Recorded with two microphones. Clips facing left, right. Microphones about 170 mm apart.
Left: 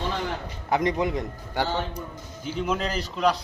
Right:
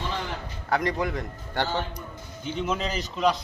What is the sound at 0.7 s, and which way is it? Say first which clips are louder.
Speech: left 2 dB; 20° left (ahead or behind).